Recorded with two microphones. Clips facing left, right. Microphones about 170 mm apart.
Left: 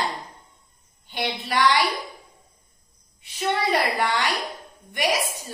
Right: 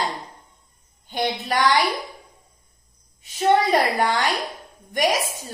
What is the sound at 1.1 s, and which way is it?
Speech, 45° right (ahead or behind).